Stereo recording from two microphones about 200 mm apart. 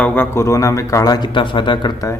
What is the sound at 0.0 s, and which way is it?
Speech, 10° left (ahead or behind).